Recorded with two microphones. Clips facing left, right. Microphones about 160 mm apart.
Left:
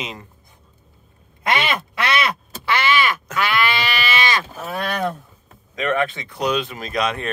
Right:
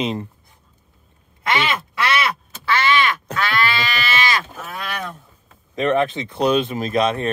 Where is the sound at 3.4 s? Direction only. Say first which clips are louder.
Left 1 dB; 15° left (ahead or behind).